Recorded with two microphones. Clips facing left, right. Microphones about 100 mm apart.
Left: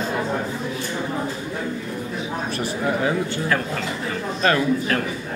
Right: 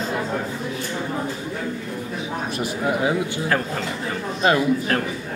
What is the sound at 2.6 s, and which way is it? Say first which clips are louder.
Speech: right 1 dB; 15° right (ahead or behind).